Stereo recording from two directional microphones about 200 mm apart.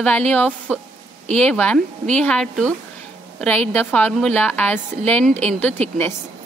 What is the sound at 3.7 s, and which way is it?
A woman's voice, 10° left (ahead or behind).